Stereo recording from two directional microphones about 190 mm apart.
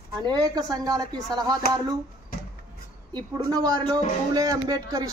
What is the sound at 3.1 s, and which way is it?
A man's voice, 20° right (ahead or behind).